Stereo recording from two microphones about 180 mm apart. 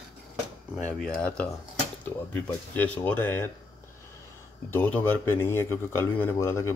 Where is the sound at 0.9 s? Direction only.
5° left (ahead or behind).